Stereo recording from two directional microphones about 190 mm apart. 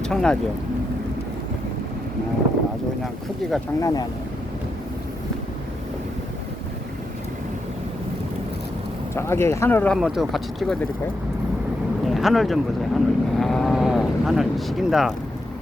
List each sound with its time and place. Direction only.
0.0 s speech: 5° left (ahead or behind)
3.8 s speech: 20° left (ahead or behind)
9.1 s speech: 15° left (ahead or behind)
12.0 s speech: centre (ahead or behind)